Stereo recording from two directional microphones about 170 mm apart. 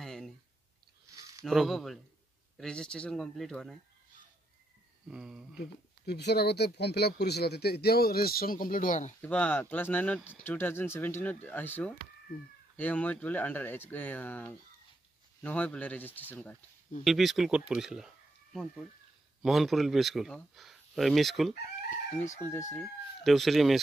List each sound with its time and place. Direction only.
0.0 s a sound: centre (ahead or behind)
1.4 s speech: centre (ahead or behind)
5.0 s speech: 5° right (ahead or behind)
5.6 s speech: 80° left; by 9.1 s 50° left (ahead or behind)
9.2 s speech: 10° left (ahead or behind)
17.0 s speech: centre (ahead or behind)
21.9 s speech: 45° left (ahead or behind)
22.4 s speech: 15° left (ahead or behind)
22.8 s speech: centre (ahead or behind)